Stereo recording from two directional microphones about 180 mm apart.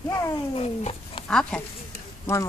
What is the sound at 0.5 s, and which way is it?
Cat, 35° left (ahead or behind).